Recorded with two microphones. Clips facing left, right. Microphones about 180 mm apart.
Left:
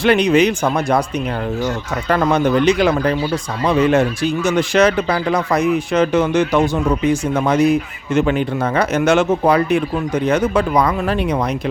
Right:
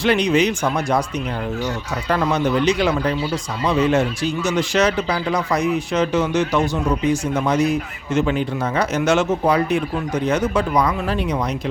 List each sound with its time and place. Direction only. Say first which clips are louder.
0.0 s speech: left 4 dB; 55° left (ahead or behind)
2.0 s speech: left 4 dB; 55° left (ahead or behind)